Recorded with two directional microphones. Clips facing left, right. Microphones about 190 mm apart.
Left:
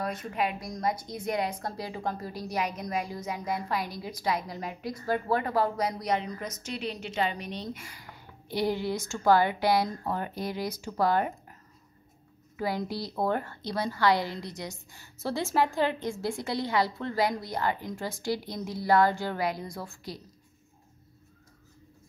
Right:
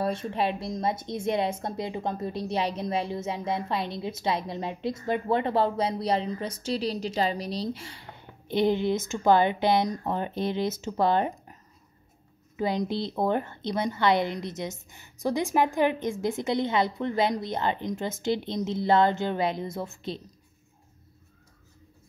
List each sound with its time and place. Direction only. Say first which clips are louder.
0.0 s a woman's voice: right 4 dB; 30° right (ahead or behind)
12.5 s a woman's voice: right 4 dB; 20° right (ahead or behind)